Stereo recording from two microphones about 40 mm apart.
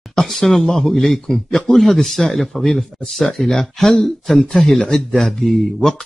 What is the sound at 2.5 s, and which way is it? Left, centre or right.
A man's voice, centre.